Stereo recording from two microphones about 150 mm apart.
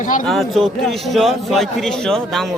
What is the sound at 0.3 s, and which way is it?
A man's voice, centre (ahead or behind).